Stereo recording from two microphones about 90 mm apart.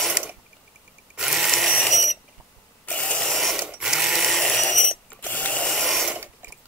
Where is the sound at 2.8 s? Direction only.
15° left (ahead or behind).